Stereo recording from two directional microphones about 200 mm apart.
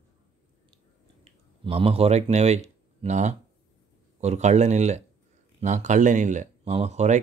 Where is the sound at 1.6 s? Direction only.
30° right (ahead or behind).